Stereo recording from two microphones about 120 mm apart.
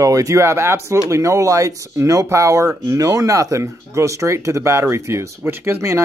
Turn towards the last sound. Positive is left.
turn(degrees=-20)  # may be behind; listen again after turning